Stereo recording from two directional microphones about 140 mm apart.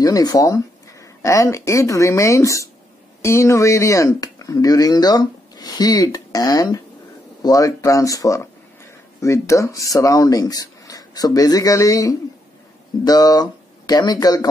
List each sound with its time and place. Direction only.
0.0 s speech: 25° left (ahead or behind)